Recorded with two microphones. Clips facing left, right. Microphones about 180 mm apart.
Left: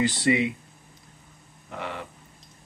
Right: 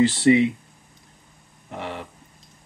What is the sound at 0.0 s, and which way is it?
Speech, 25° right (ahead or behind).